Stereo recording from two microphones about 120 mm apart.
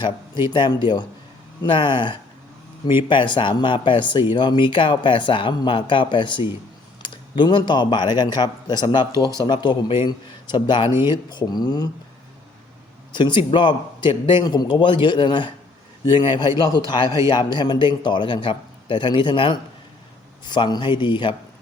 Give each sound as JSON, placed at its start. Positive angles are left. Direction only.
{"t": 0.5, "sound": "a man's voice", "side_deg": 40}
{"t": 13.1, "sound": "a man's voice", "side_deg": 40}